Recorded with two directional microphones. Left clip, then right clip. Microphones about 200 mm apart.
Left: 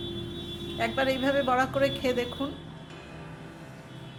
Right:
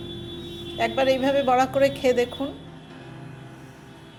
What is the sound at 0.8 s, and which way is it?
A woman's voice, 15° right (ahead or behind).